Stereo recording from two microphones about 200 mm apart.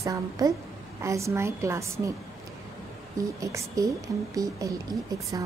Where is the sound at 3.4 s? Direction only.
15° right (ahead or behind).